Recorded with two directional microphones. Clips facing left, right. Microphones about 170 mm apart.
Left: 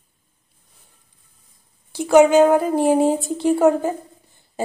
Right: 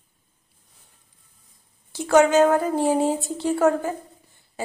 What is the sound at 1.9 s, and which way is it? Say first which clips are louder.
A woman's voice: left 4 dB; 15° left (ahead or behind).